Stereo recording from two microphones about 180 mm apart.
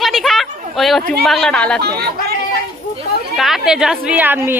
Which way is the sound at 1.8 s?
60° right (ahead or behind).